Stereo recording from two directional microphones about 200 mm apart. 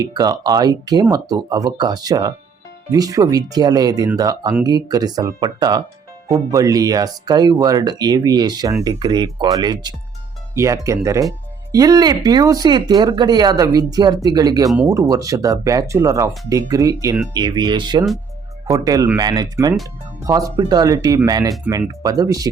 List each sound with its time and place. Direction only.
0.0 s speech: 20° right (ahead or behind)